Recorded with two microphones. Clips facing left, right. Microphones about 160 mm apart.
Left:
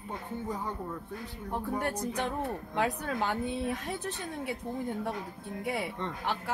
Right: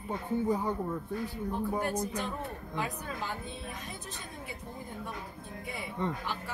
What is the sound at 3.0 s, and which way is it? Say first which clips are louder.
A woman's voice: left 6 dB; 70° left (ahead or behind).